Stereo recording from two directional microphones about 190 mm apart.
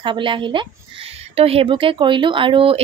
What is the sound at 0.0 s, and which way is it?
A woman's voice, 25° right (ahead or behind).